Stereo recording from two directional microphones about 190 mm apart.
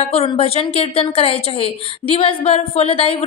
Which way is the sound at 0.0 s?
35° left (ahead or behind).